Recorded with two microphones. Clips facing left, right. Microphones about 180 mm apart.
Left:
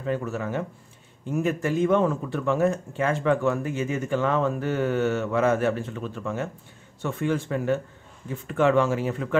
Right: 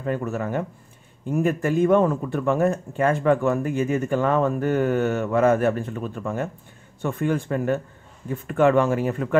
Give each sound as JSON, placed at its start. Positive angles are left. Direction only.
{"t": 0.0, "sound": "a man's voice", "side_deg": -50}